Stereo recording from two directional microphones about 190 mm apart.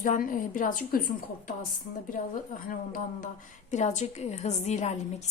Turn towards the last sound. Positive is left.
turn(degrees=35)  # may be behind; listen again after turning